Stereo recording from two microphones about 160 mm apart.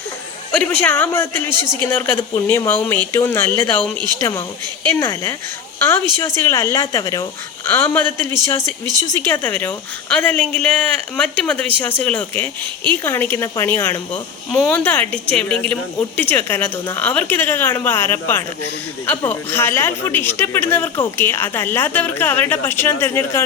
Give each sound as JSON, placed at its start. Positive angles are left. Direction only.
{"t": 0.5, "sound": "a woman's voice", "side_deg": 10}